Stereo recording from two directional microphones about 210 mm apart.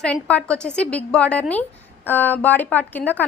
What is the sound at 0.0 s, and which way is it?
A woman's voice, 5° left (ahead or behind).